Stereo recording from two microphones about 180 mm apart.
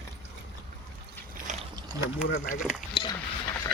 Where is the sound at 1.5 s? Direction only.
40° right (ahead or behind).